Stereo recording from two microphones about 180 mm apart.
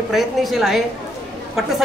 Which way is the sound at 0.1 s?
Centre (ahead or behind).